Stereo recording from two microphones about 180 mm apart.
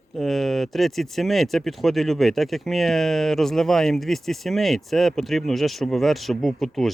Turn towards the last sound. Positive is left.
turn(degrees=0)  # may be behind; listen again after turning